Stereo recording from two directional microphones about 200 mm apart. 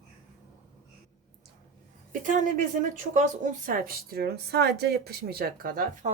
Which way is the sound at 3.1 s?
40° right (ahead or behind).